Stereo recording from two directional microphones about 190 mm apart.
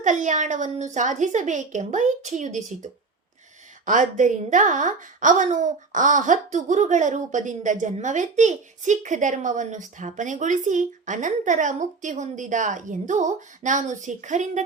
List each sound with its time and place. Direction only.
0.0 s a woman's voice: 40° right (ahead or behind)